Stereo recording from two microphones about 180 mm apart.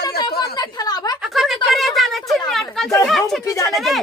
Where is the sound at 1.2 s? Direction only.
Centre (ahead or behind).